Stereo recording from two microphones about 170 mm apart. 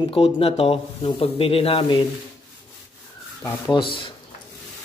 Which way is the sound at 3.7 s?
30° left (ahead or behind).